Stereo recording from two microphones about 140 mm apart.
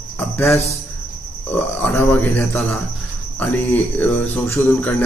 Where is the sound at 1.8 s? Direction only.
15° left (ahead or behind).